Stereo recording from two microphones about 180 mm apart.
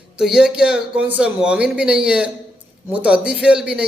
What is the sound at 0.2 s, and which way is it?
A man's voice, 5° right (ahead or behind).